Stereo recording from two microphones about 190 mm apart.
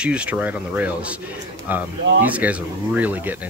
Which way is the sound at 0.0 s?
5° right (ahead or behind).